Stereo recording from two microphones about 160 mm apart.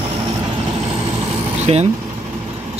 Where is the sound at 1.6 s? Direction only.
45° right (ahead or behind).